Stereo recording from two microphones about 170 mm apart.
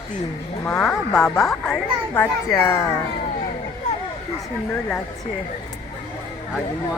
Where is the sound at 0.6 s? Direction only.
10° left (ahead or behind).